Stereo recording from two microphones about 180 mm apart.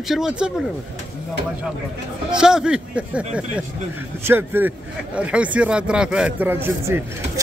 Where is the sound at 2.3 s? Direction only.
5° right (ahead or behind).